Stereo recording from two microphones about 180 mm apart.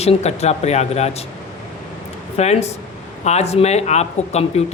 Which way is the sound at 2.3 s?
35° left (ahead or behind).